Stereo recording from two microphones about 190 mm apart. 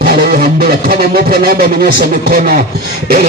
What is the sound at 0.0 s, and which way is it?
Music, 55° right (ahead or behind).